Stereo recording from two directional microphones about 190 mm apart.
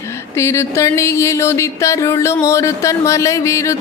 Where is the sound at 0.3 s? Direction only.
15° left (ahead or behind).